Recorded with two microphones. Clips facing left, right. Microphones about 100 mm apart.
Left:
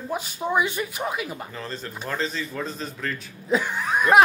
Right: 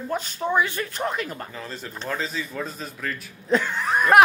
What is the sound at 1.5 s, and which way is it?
A man's voice, 10° right (ahead or behind).